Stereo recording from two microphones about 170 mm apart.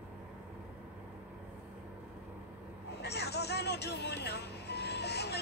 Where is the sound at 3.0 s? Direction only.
75° left (ahead or behind).